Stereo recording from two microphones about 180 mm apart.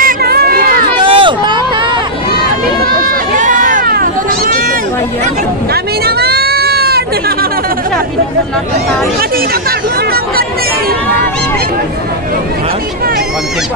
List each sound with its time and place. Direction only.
0.0 s crowd: 60° right (ahead or behind)
0.9 s a sound: 25° right (ahead or behind)
3.3 s run: 45° right (ahead or behind)
6.0 s goat: 60° right (ahead or behind)